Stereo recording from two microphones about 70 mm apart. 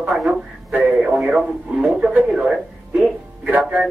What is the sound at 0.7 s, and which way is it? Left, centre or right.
Speech, centre.